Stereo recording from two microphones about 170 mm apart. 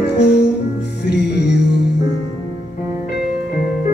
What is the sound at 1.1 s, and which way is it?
Music, 80° left.